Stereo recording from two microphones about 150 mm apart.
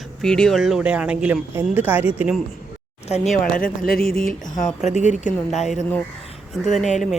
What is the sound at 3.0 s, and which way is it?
Speech, 45° left (ahead or behind).